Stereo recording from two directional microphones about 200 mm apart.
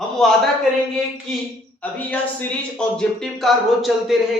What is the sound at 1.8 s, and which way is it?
A man's voice, 10° left (ahead or behind).